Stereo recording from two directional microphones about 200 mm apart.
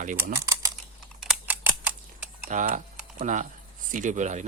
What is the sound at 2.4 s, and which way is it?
Speech, 45° right (ahead or behind).